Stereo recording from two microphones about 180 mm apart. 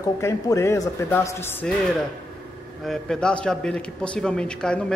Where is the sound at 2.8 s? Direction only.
5° left (ahead or behind).